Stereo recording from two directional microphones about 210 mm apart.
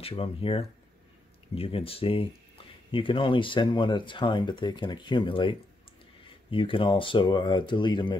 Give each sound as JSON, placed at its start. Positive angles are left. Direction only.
{"t": 0.0, "sound": "speech", "side_deg": 25}